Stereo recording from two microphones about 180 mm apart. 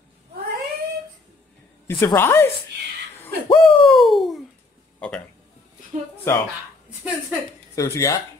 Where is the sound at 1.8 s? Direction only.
15° left (ahead or behind).